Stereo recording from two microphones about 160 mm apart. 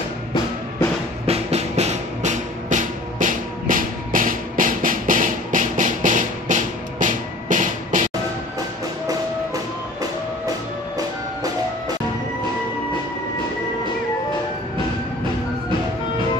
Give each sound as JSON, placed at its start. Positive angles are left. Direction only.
{"t": 1.2, "sound": "music", "side_deg": -40}
{"t": 11.0, "sound": "music", "side_deg": -25}